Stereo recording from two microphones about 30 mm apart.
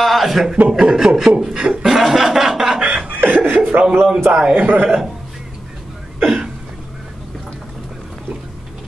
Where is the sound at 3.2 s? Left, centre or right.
Right.